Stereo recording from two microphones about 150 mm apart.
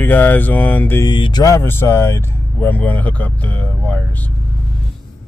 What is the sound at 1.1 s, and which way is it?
Speech, 30° left (ahead or behind).